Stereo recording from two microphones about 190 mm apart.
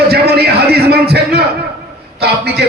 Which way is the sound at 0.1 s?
55° right (ahead or behind).